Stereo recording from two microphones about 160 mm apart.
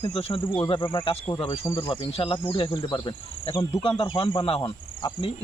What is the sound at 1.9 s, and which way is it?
Speech, 35° left (ahead or behind).